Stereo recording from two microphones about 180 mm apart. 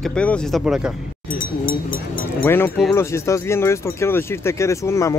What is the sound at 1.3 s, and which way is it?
Speech, 50° left (ahead or behind).